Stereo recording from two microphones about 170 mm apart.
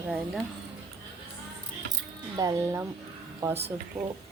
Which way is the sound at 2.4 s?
20° right (ahead or behind).